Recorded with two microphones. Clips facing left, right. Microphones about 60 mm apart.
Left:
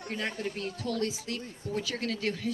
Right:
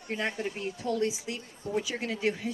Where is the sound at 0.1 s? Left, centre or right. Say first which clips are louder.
Right 2 dB; centre.